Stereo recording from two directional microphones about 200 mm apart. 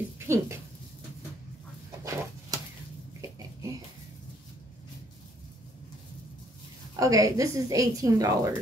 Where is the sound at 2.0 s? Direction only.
15° right (ahead or behind).